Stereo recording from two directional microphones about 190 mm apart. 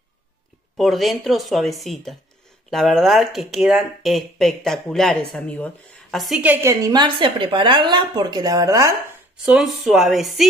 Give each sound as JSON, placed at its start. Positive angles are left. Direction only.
{"t": 0.7, "sound": "a woman's voice", "side_deg": 0}
{"t": 9.4, "sound": "speech", "side_deg": -5}